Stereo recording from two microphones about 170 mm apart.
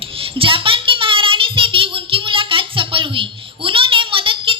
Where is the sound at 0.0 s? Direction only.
30° right (ahead or behind).